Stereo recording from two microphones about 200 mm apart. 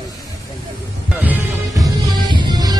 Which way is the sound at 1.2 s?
15° right (ahead or behind).